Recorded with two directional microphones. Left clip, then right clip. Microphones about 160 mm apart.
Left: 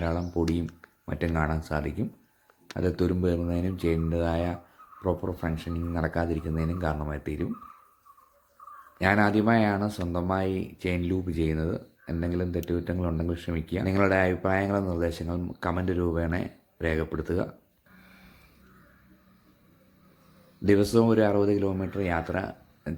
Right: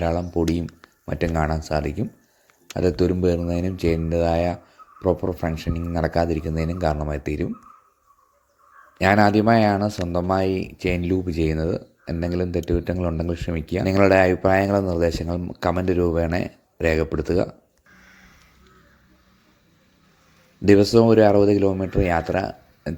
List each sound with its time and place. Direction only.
0.0 s speech: 25° right (ahead or behind)
9.0 s speech: 30° right (ahead or behind)
20.7 s speech: 30° right (ahead or behind)